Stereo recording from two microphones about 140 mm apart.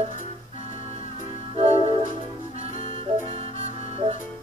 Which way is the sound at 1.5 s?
45° right (ahead or behind).